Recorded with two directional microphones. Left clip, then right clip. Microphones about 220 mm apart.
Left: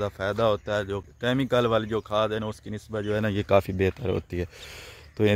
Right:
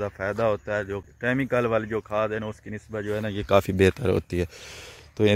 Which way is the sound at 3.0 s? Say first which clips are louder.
Left 3 dB; 30° left (ahead or behind).